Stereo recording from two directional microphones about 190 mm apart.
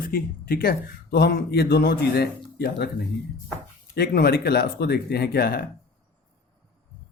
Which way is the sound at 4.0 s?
55° left (ahead or behind).